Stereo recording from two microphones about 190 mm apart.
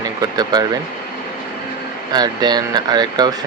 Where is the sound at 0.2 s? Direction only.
20° right (ahead or behind).